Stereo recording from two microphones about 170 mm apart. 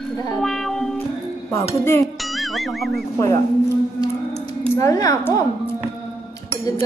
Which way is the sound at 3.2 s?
20° left (ahead or behind).